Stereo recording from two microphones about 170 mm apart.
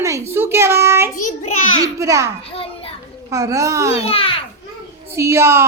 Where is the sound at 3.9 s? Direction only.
35° left (ahead or behind).